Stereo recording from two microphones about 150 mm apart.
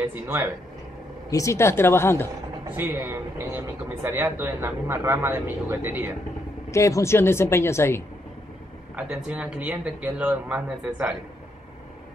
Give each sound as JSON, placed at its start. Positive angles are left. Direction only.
{"t": 0.0, "sound": "a man's voice", "side_deg": -15}
{"t": 1.3, "sound": "speech", "side_deg": 20}
{"t": 2.7, "sound": "a man's voice", "side_deg": -15}
{"t": 6.7, "sound": "speech", "side_deg": 20}
{"t": 8.9, "sound": "a man's voice", "side_deg": -5}